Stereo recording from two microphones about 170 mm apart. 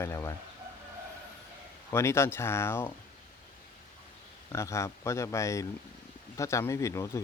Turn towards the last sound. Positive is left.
turn(degrees=15)  # may be behind; listen again after turning